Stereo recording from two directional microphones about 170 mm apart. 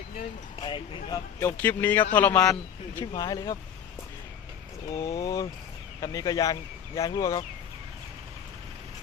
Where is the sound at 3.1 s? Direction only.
20° left (ahead or behind).